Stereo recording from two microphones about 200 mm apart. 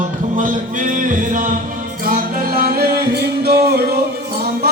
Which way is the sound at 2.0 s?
45° right (ahead or behind).